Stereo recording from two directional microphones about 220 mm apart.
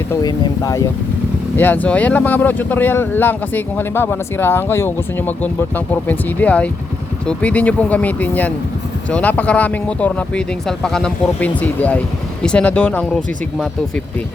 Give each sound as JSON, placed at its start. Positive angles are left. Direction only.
{"t": 0.1, "sound": "speech", "side_deg": 20}